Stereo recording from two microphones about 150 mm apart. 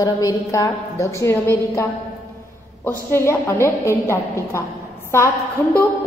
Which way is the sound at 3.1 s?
15° left (ahead or behind).